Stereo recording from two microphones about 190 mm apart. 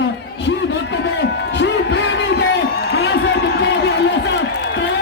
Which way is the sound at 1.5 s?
70° left (ahead or behind).